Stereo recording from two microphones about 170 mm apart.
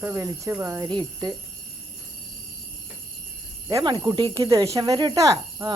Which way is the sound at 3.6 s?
25° right (ahead or behind).